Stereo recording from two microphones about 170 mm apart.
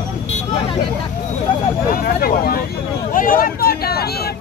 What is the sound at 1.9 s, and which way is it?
Speech, 60° left (ahead or behind).